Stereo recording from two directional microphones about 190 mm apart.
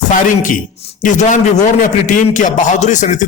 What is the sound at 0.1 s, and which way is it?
A man's voice, 45° left (ahead or behind).